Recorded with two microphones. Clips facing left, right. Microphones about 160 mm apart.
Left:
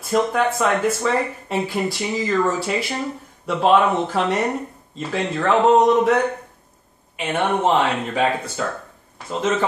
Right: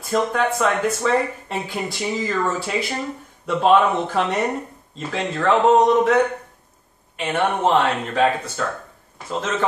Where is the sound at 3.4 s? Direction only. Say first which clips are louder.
Even; centre (ahead or behind).